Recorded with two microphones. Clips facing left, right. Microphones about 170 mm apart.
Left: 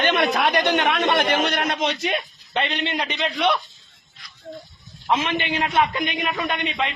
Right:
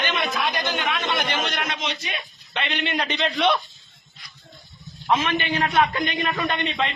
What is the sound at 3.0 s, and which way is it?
Speech, 5° left (ahead or behind).